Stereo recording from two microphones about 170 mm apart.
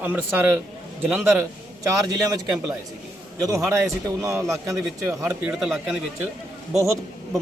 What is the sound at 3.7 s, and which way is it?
Speech, 15° right (ahead or behind).